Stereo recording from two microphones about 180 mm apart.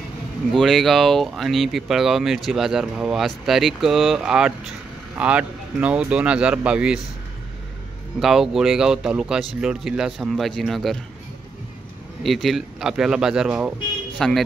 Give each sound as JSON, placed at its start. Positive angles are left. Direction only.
{"t": 0.5, "sound": "speech", "side_deg": 0}
{"t": 8.2, "sound": "speech", "side_deg": 0}
{"t": 12.2, "sound": "speech", "side_deg": 0}